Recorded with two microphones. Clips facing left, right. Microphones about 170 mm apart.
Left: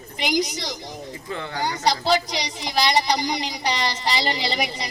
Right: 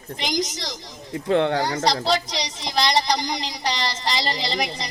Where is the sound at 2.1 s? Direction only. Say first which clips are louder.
Left 1 dB; 5° left (ahead or behind).